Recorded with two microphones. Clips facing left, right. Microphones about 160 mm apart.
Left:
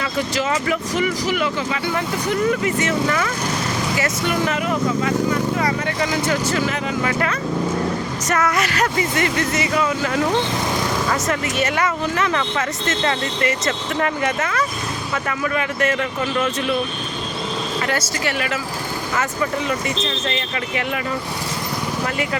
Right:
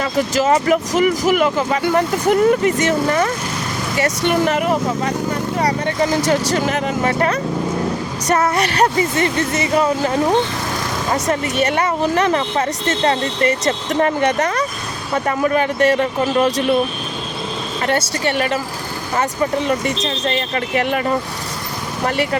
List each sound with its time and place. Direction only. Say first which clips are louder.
0.0 s speech: right 5 dB; 45° right (ahead or behind)
4.3 s speech: right 6 dB; 55° right (ahead or behind); by 6.4 s 35° right (ahead or behind)
6.5 s speech: right 3 dB; 45° right (ahead or behind)
11.8 s speech: right 4 dB; 35° right (ahead or behind)
18.3 s speech: right 6 dB; 35° right (ahead or behind)